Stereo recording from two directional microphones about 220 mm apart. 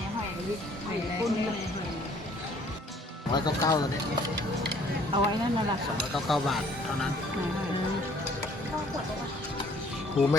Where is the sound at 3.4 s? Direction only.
20° left (ahead or behind).